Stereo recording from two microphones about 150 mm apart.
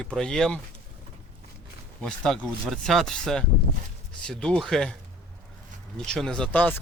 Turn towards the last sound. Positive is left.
turn(degrees=10)  # may be behind; listen again after turning